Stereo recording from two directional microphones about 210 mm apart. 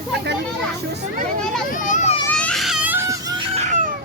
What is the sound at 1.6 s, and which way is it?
Speech, 40° left (ahead or behind).